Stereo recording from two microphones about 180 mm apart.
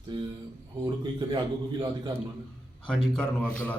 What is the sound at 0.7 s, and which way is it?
Speech, 25° right (ahead or behind).